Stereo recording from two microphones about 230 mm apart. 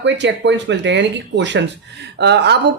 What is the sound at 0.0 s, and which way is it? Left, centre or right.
Speech, right.